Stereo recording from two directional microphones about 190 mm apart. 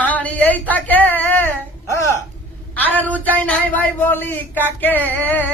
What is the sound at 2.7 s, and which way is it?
A woman's voice, 10° left (ahead or behind).